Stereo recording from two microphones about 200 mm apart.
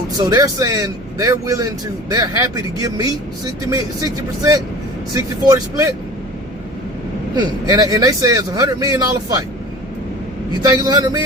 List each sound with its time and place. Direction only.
0.2 s speech: 15° right (ahead or behind)
7.3 s speech: 20° right (ahead or behind)
10.6 s a man's voice: 20° right (ahead or behind)